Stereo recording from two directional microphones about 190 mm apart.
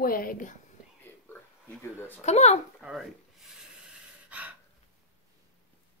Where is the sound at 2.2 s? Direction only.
35° left (ahead or behind).